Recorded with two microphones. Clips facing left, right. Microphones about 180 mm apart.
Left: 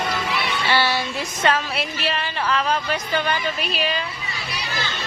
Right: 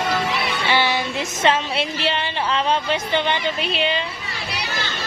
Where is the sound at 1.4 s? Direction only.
25° right (ahead or behind).